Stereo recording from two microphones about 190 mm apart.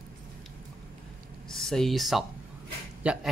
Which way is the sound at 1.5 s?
Centre (ahead or behind).